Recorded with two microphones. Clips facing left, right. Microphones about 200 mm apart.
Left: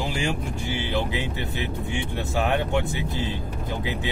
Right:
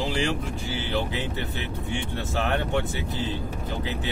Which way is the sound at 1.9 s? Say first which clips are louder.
Even; 15° left (ahead or behind).